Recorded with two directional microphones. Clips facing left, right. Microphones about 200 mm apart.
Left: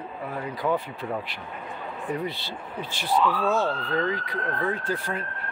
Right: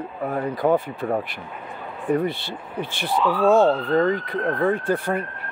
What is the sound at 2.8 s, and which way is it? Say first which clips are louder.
Speech: right 1 dB; 55° right (ahead or behind).